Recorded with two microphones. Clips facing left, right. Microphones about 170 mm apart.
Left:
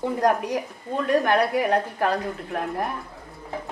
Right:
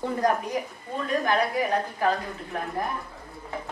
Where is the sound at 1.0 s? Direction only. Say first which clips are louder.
Left 4 dB; 70° left (ahead or behind).